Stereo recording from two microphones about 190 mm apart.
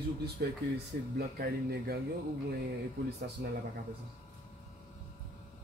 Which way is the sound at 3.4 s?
60° right (ahead or behind).